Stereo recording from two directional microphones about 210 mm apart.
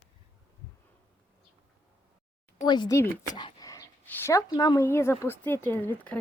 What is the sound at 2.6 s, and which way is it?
Speech, 20° left (ahead or behind).